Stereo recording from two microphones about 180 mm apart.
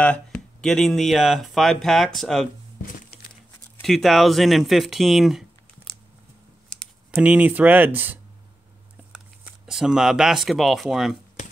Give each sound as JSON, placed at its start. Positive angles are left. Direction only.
{"t": 0.6, "sound": "speech", "side_deg": 5}
{"t": 2.8, "sound": "a sound", "side_deg": 55}
{"t": 3.7, "sound": "speech", "side_deg": 0}
{"t": 6.7, "sound": "speech", "side_deg": 0}